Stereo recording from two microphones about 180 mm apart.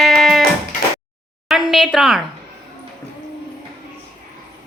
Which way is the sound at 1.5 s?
Centre (ahead or behind).